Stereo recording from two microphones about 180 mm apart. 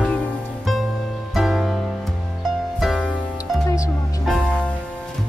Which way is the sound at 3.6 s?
20° left (ahead or behind).